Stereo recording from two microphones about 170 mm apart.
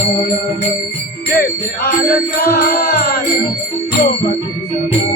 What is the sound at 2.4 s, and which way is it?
Music, 65° left (ahead or behind).